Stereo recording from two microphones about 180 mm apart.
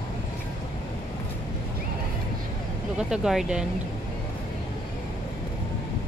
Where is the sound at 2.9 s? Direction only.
5° right (ahead or behind).